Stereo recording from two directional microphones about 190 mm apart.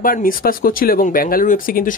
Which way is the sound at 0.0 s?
50° left (ahead or behind).